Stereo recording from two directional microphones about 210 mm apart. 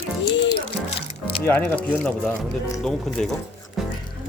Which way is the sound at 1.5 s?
10° left (ahead or behind).